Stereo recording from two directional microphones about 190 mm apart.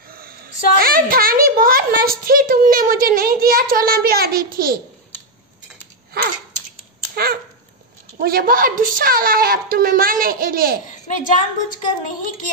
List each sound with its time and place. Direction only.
0.7 s a child's voice: 50° right (ahead or behind)
6.1 s a sound: 55° right (ahead or behind)
8.2 s a child's voice: 50° right (ahead or behind)
11.1 s a woman's voice: 40° left (ahead or behind)